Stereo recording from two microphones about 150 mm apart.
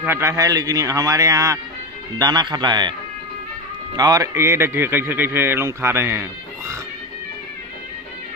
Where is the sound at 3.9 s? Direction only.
25° right (ahead or behind).